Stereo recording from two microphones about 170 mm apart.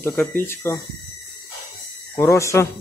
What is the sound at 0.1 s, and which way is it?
Speech, 10° left (ahead or behind).